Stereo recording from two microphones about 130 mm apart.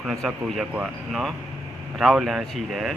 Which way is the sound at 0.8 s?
Centre (ahead or behind).